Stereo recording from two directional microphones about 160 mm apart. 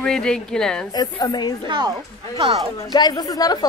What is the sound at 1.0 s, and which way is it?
Speech, 25° left (ahead or behind).